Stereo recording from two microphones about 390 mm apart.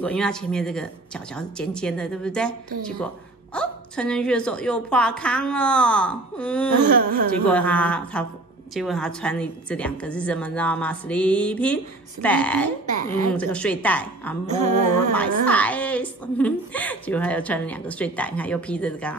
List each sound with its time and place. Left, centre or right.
0.0 s a woman's voice: centre
3.5 s a woman's voice: centre
6.9 s speech: right
7.4 s a woman's voice: centre
14.4 s music: centre
15.1 s a woman's voice: centre